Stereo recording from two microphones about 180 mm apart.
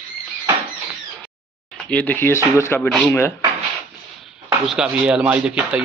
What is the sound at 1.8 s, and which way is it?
Speech, 10° left (ahead or behind).